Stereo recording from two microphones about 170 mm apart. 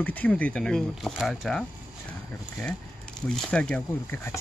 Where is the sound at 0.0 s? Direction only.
10° left (ahead or behind).